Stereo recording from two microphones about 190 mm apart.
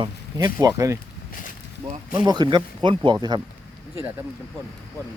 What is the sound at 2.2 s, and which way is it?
Speech, 25° right (ahead or behind).